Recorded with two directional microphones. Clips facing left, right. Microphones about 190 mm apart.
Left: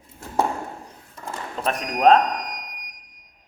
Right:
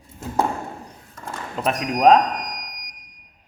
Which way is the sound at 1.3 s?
5° right (ahead or behind).